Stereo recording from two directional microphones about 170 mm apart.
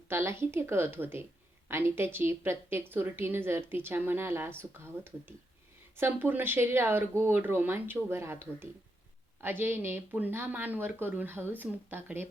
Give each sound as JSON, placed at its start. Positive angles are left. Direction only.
{"t": 0.1, "sound": "a woman's voice", "side_deg": -15}